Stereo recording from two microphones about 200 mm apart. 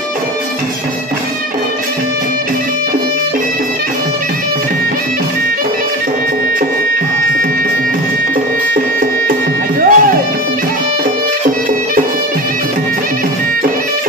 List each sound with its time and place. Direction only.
9.8 s music: 45° right (ahead or behind)